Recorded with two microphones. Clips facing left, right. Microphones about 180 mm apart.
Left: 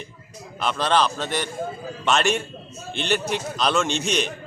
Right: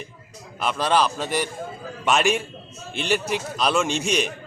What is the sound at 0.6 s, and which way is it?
A man's voice, 5° right (ahead or behind).